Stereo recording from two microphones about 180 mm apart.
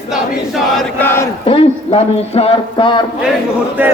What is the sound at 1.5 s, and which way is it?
Speech, 35° left (ahead or behind).